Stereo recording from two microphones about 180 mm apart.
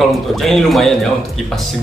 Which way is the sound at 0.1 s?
Centre (ahead or behind).